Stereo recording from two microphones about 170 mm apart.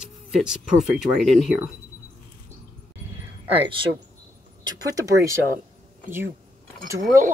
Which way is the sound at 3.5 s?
30° right (ahead or behind).